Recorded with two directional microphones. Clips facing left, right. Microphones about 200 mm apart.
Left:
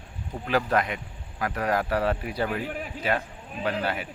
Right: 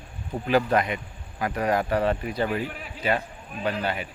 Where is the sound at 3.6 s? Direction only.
5° left (ahead or behind).